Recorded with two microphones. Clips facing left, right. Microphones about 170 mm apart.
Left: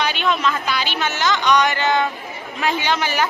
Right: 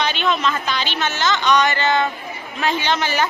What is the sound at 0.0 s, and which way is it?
A man's voice, 10° left (ahead or behind).